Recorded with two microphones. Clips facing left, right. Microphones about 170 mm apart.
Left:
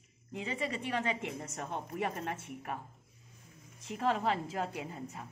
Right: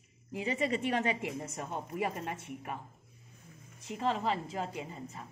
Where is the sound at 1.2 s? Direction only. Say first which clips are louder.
Right 2 dB; 5° right (ahead or behind).